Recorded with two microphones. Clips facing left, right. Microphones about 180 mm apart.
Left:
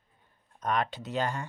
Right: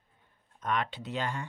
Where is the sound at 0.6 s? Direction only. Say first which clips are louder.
Left 2 dB; 40° left (ahead or behind).